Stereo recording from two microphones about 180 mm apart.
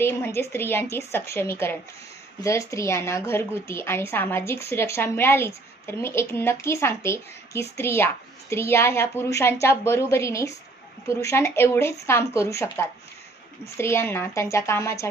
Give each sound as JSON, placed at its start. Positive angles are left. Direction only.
{"t": 0.0, "sound": "a woman's voice", "side_deg": 15}